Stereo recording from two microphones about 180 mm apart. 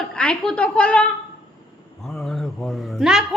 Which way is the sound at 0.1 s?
5° left (ahead or behind).